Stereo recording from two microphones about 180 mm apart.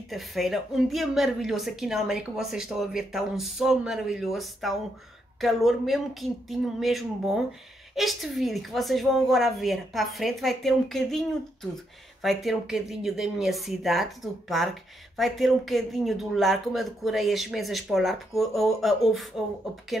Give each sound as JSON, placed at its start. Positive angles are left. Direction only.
{"t": 0.1, "sound": "speech", "side_deg": 0}